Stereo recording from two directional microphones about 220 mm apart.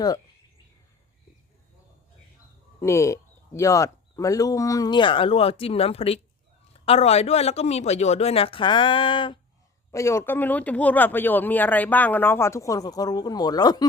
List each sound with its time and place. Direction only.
2.8 s speech: 15° left (ahead or behind)